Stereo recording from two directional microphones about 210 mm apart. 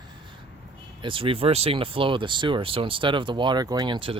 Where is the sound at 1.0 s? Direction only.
25° right (ahead or behind).